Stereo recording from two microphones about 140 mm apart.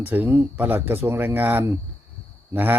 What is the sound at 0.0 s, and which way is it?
A man's voice, 15° right (ahead or behind).